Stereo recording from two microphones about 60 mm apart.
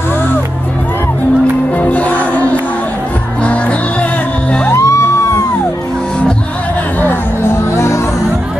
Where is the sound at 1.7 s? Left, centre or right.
Left.